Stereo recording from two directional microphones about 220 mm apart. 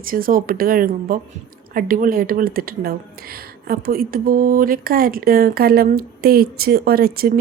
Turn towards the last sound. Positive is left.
turn(degrees=-45)  # may be behind; listen again after turning